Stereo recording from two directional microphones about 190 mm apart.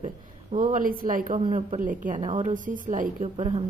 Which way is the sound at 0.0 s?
45° right (ahead or behind).